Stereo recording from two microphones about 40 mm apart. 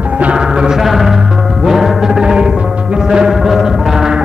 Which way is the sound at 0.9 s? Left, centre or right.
Centre.